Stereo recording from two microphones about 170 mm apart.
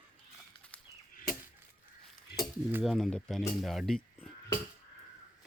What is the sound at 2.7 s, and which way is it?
Speech, 10° right (ahead or behind).